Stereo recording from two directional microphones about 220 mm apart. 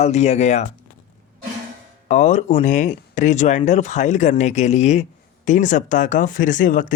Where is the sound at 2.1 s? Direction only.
35° left (ahead or behind).